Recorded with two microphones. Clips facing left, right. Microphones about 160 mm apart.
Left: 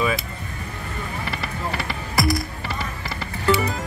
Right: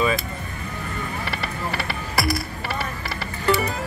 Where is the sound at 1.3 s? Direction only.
20° left (ahead or behind).